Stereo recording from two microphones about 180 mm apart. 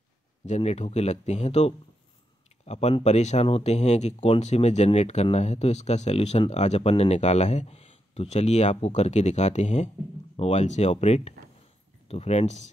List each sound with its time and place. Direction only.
0.5 s speech: 40° left (ahead or behind)